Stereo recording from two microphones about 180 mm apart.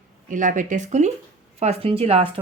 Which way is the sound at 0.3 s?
45° right (ahead or behind).